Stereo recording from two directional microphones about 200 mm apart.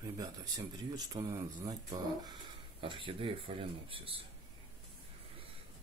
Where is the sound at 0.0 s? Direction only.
20° right (ahead or behind).